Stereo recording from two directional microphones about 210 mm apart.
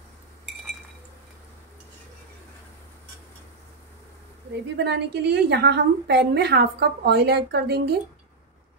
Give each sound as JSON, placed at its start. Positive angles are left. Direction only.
{"t": 4.7, "sound": "a woman's voice", "side_deg": -50}